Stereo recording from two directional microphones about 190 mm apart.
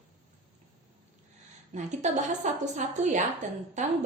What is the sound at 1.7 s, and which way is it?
A woman's voice, 40° right (ahead or behind).